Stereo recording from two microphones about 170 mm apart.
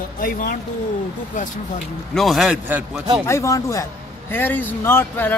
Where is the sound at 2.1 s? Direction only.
Centre (ahead or behind).